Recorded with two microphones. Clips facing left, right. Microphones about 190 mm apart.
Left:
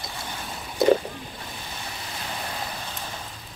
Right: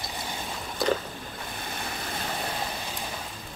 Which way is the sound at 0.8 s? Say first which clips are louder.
Left 8 dB; 20° left (ahead or behind).